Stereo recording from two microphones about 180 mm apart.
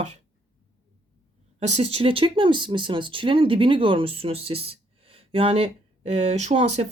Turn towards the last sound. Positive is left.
turn(degrees=-35)  # may be behind; listen again after turning